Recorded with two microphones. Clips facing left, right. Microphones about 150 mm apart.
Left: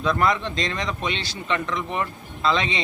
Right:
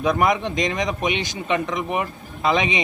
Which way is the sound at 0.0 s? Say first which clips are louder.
Right 2 dB; 20° right (ahead or behind).